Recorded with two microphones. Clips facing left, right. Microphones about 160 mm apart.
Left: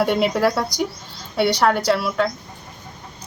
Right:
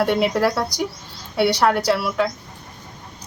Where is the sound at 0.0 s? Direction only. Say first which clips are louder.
Even; centre (ahead or behind).